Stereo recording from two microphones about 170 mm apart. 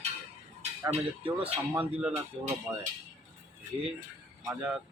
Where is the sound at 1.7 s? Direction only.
5° right (ahead or behind).